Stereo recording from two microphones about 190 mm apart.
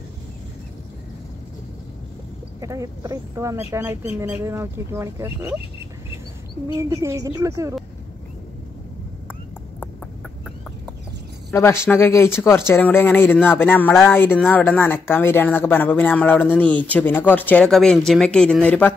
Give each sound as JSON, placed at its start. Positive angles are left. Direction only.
{"t": 2.6, "sound": "speech", "side_deg": -15}
{"t": 6.8, "sound": "speech", "side_deg": -15}
{"t": 11.5, "sound": "speech", "side_deg": 15}